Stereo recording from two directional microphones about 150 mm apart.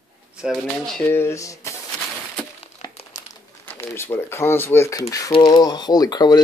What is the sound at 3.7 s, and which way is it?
Speech, 15° left (ahead or behind).